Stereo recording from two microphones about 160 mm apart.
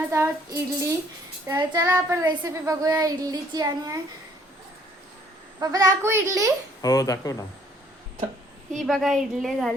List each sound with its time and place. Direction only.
0.1 s speech: 20° right (ahead or behind)
5.5 s speech: 20° right (ahead or behind)
6.8 s speech: 20° left (ahead or behind)
8.8 s a woman's voice: centre (ahead or behind)